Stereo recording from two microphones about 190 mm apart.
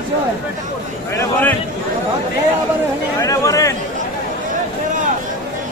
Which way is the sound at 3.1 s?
20° left (ahead or behind).